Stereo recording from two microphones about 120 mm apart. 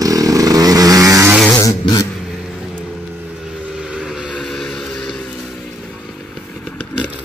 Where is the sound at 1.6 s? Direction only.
30° left (ahead or behind).